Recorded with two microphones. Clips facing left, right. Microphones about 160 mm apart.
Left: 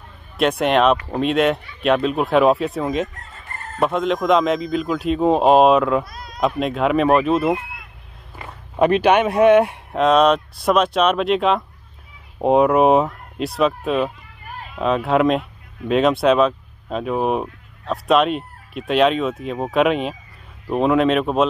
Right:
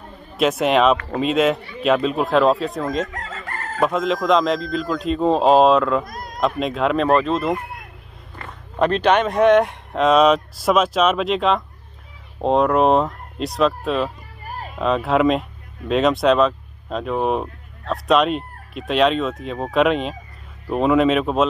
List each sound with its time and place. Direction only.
0.4 s speech: centre (ahead or behind)
3.1 s chicken: 90° right
3.8 s speech: centre (ahead or behind)
6.0 s cat: 45° right (ahead or behind)
6.4 s speech: centre (ahead or behind)
14.4 s a sound: 40° right (ahead or behind)
14.8 s speech: centre (ahead or behind)